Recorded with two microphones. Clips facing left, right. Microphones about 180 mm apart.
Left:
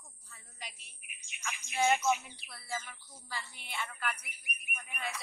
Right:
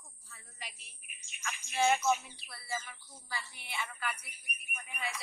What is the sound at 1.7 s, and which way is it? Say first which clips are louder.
Speech: even; centre (ahead or behind).